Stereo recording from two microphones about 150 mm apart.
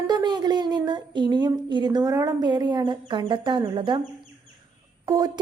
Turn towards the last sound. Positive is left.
turn(degrees=-25)  # may be behind; listen again after turning